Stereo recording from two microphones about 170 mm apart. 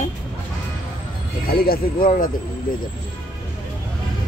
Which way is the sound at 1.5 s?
60° left (ahead or behind).